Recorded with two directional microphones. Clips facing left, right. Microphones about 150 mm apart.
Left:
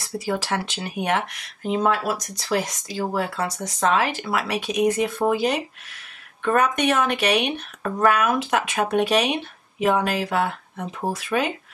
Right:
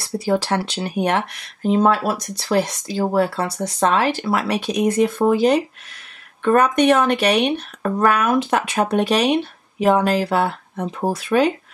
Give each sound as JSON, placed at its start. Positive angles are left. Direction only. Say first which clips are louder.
{"t": 0.3, "sound": "speech", "louder": "right 6 dB", "side_deg": -35}